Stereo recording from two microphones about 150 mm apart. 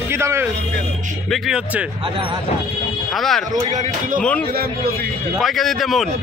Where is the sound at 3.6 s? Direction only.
55° right (ahead or behind).